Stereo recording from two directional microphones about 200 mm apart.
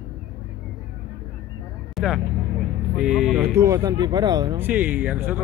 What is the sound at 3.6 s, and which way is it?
Speech, 15° right (ahead or behind).